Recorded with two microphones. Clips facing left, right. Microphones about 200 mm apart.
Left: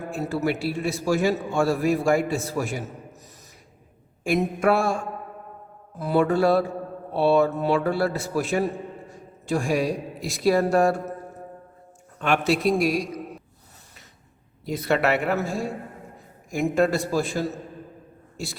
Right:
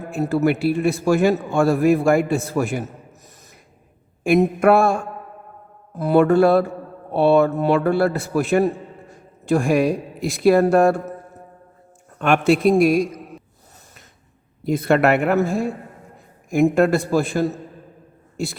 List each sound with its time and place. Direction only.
0.1 s a man's voice: 55° right (ahead or behind)
4.2 s a man's voice: 55° right (ahead or behind)
6.0 s a man's voice: 55° right (ahead or behind)
12.2 s speech: 50° right (ahead or behind)
14.6 s a man's voice: 50° right (ahead or behind)